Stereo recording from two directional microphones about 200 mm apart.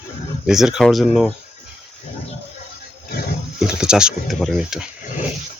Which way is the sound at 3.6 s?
5° right (ahead or behind).